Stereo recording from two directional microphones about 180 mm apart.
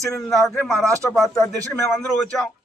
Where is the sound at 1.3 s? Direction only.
15° left (ahead or behind).